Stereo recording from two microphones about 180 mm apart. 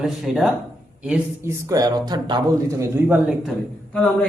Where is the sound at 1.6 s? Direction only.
20° right (ahead or behind).